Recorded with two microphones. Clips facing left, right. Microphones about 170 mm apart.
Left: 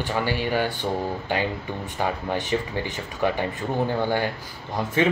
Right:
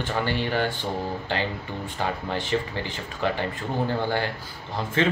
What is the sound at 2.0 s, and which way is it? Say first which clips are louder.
Speech: left 2 dB; 15° left (ahead or behind).